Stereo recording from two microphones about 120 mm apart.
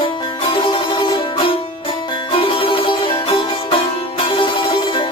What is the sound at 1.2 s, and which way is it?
Music, 45° left (ahead or behind).